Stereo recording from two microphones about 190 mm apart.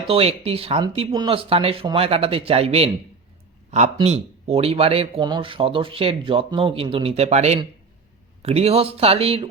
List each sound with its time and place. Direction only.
0.1 s a man's voice: 30° right (ahead or behind)